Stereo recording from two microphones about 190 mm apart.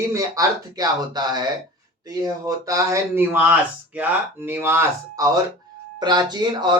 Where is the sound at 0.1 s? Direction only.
15° right (ahead or behind).